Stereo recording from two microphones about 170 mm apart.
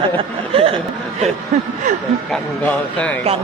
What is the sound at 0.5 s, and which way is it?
Speech, 30° right (ahead or behind).